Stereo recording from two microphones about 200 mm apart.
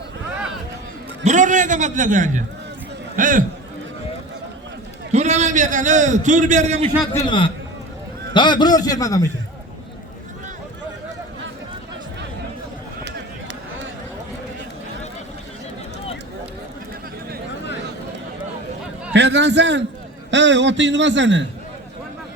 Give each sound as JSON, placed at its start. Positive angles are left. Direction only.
{"t": 1.2, "sound": "a man's voice", "side_deg": -40}
{"t": 5.1, "sound": "a man's voice", "side_deg": -35}
{"t": 7.1, "sound": "a man's voice", "side_deg": 20}
{"t": 19.1, "sound": "a sound", "side_deg": -60}
{"t": 20.3, "sound": "a man's voice", "side_deg": -65}